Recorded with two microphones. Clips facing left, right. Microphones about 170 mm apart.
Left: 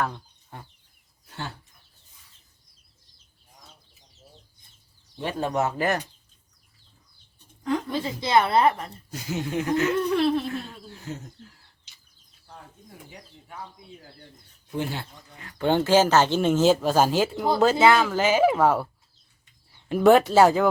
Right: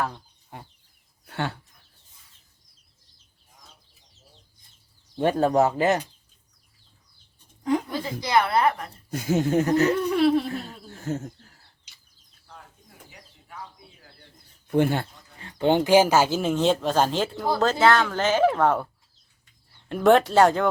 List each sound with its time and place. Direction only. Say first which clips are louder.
0.0 s chicken: left 1 dB; 10° right (ahead or behind)
1.3 s speech: right 7 dB; 65° right (ahead or behind)
5.1 s speech: right 7 dB; 50° right (ahead or behind)
5.5 s speech: right 1 dB; 30° right (ahead or behind)
7.6 s speech: right 2 dB; 15° right (ahead or behind)
7.9 s a woman's voice: left 2 dB; 25° left (ahead or behind)
9.0 s speech: right 8 dB; 50° right (ahead or behind)
10.2 s laughter: right 4 dB; 10° right (ahead or behind)
10.9 s speech: right 8 dB; 50° right (ahead or behind)
14.7 s speech: right 8 dB; 55° right (ahead or behind)
15.4 s speech: right 2 dB; 25° right (ahead or behind); by 18.9 s 5° left (ahead or behind)
19.9 s speech: left 1 dB; 5° left (ahead or behind)